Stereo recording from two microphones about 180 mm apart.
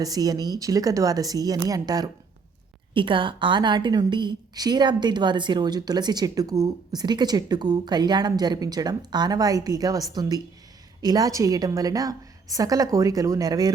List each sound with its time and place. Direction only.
0.0 s a woman's voice: 20° right (ahead or behind)